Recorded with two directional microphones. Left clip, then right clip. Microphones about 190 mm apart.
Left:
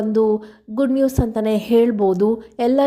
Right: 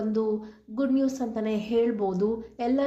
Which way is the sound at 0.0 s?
40° left (ahead or behind).